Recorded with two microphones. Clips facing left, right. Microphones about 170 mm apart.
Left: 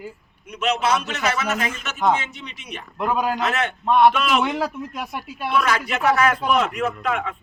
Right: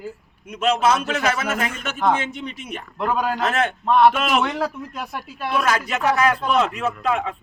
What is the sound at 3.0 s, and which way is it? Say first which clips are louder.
Speech: even; 5° left (ahead or behind).